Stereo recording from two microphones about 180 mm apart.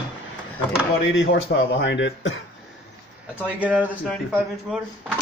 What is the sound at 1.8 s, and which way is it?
Speech, 85° left.